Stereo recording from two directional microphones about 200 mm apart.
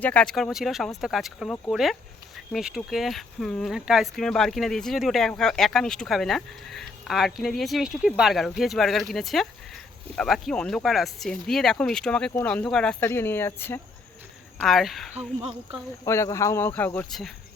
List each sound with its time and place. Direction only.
0.0 s speech: 5° left (ahead or behind)
14.6 s speech: centre (ahead or behind)
15.1 s a woman's voice: 30° right (ahead or behind)
16.0 s speech: 15° left (ahead or behind)